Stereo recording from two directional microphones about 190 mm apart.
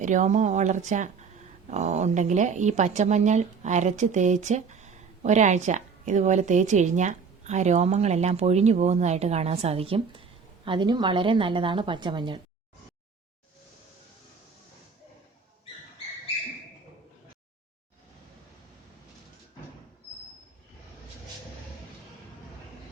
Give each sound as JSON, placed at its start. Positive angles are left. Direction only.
{"t": 0.0, "sound": "a woman's voice", "side_deg": -40}